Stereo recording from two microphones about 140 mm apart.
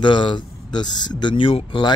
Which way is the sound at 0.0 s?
35° left (ahead or behind).